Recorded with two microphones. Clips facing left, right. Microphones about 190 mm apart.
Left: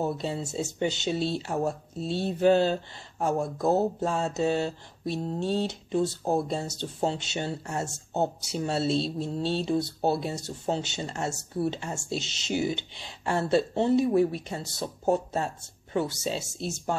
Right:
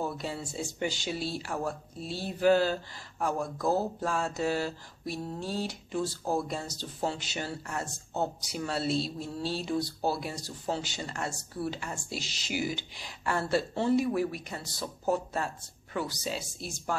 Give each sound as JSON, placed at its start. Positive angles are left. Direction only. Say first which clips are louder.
{"t": 0.0, "sound": "speech", "louder": "left 5 dB", "side_deg": 25}